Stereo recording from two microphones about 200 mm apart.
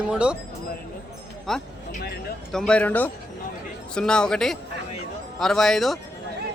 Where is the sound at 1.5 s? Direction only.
Centre (ahead or behind).